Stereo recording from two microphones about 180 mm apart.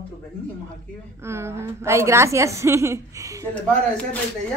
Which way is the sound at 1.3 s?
15° right (ahead or behind).